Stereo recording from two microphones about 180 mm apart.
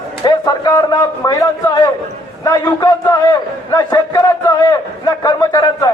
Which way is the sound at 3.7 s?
20° left (ahead or behind).